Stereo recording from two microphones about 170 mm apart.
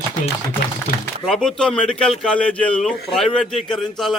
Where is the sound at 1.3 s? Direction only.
5° left (ahead or behind).